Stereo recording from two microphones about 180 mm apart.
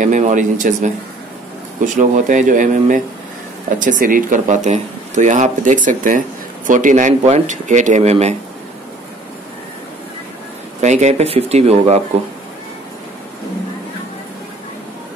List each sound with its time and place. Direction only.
0.0 s speech: 45° right (ahead or behind)
2.0 s speech: 45° right (ahead or behind)
10.8 s speech: 40° right (ahead or behind)